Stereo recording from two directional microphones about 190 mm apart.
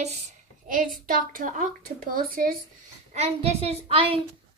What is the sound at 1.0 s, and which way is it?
Speech, 45° right (ahead or behind).